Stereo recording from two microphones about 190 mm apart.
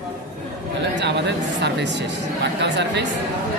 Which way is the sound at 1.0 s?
65° right (ahead or behind).